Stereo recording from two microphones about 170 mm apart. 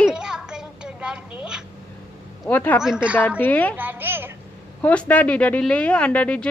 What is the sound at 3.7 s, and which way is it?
Speech, 10° right (ahead or behind).